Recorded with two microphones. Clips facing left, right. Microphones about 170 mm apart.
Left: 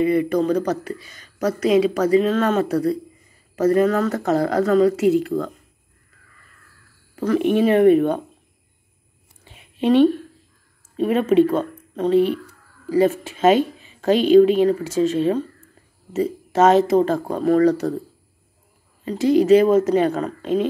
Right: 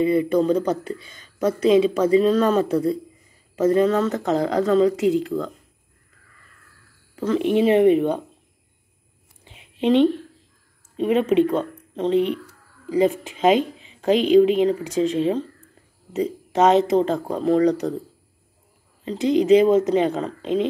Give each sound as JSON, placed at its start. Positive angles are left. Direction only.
{"t": 0.0, "sound": "a woman's voice", "side_deg": -25}
{"t": 7.5, "sound": "a woman's voice", "side_deg": -20}
{"t": 9.4, "sound": "a sound", "side_deg": -20}
{"t": 11.1, "sound": "a woman's voice", "side_deg": -15}
{"t": 19.0, "sound": "a woman's voice", "side_deg": -20}